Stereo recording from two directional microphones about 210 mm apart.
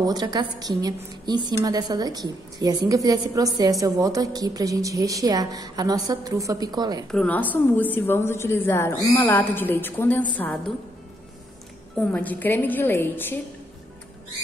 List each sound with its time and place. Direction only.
0.0 s a woman's voice: 20° right (ahead or behind)
7.1 s a woman's voice: 5° left (ahead or behind)
12.0 s a woman's voice: 10° left (ahead or behind)